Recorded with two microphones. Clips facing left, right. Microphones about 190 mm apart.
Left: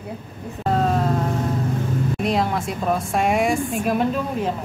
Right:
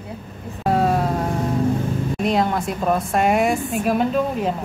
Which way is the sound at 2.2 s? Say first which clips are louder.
Right 3 dB; centre (ahead or behind).